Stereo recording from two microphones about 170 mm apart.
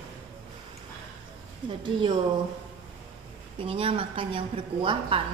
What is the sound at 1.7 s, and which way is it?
Speech, 30° right (ahead or behind).